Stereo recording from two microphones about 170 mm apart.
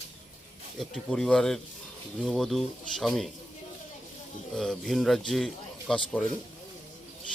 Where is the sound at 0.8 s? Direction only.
Centre (ahead or behind).